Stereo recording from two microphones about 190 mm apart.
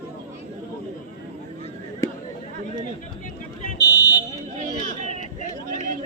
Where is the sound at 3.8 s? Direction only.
20° left (ahead or behind).